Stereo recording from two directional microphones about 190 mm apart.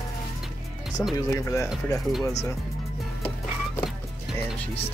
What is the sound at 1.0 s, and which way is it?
Speech, 10° left (ahead or behind).